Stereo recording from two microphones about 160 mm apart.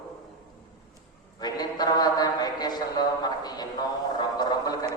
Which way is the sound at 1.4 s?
25° left (ahead or behind).